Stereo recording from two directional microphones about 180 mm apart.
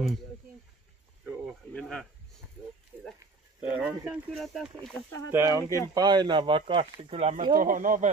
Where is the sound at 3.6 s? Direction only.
5° right (ahead or behind).